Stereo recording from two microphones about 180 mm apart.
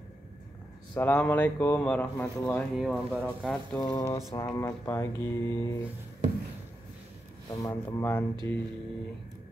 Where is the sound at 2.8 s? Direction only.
Centre (ahead or behind).